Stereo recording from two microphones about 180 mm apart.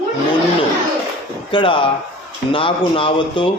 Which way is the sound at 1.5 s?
30° left (ahead or behind).